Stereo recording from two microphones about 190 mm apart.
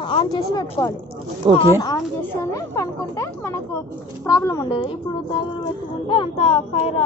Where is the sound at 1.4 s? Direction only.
25° right (ahead or behind).